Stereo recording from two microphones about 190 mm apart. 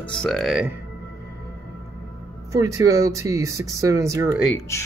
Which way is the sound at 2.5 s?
15° right (ahead or behind).